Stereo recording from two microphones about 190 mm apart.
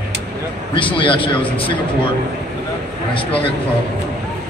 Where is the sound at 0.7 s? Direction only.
25° left (ahead or behind).